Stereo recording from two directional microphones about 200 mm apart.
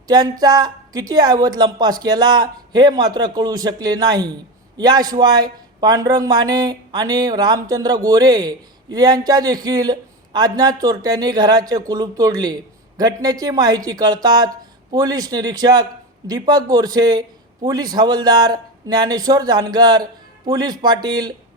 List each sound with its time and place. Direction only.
0.1 s speech: 20° right (ahead or behind)